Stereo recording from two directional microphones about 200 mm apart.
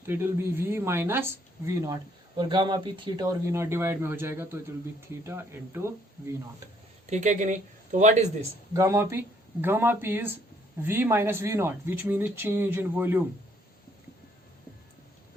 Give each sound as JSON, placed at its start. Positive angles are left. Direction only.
{"t": 0.0, "sound": "speech", "side_deg": -10}
{"t": 7.1, "sound": "speech", "side_deg": -35}
{"t": 8.7, "sound": "speech", "side_deg": -15}